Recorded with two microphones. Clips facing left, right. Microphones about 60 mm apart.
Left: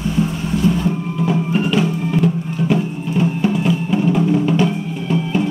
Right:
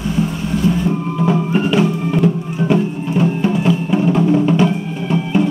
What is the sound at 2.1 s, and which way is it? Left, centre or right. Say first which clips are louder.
Music: right 2 dB; centre.